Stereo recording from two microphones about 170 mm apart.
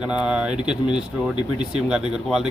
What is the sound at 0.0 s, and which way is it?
A man's voice, 5° right (ahead or behind).